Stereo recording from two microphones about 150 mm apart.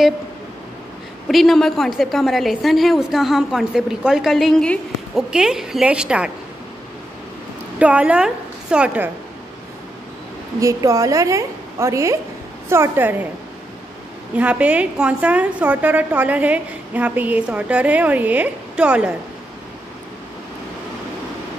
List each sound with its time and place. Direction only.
1.3 s a woman's voice: centre (ahead or behind)
7.8 s a woman's voice: 5° right (ahead or behind)
10.6 s a woman's voice: 20° right (ahead or behind)
14.3 s a woman's voice: 10° right (ahead or behind)